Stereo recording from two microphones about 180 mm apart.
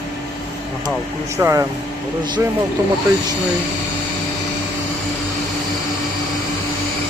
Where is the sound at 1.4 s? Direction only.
15° right (ahead or behind).